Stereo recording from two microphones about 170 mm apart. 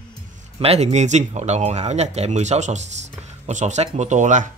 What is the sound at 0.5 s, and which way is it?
Speech, 35° right (ahead or behind).